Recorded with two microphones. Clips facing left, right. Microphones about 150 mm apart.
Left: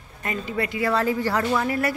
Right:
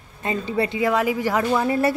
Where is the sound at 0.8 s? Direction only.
15° right (ahead or behind).